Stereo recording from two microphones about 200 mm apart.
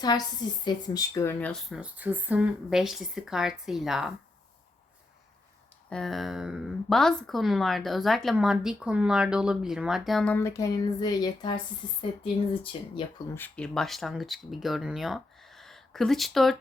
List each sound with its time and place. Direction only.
0.0 s speech: 20° left (ahead or behind); by 4.1 s centre (ahead or behind)
5.9 s speech: centre (ahead or behind); by 13.1 s 25° left (ahead or behind)
13.3 s speech: 5° left (ahead or behind)